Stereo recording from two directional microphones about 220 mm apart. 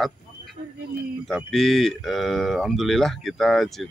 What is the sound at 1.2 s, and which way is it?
Speech, centre (ahead or behind).